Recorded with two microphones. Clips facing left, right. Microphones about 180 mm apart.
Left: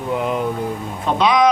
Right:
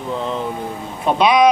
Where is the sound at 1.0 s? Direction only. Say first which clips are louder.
Right 2 dB; 15° right (ahead or behind).